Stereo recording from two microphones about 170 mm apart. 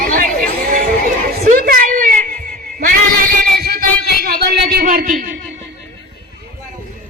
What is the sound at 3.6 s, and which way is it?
Music, 60° right (ahead or behind).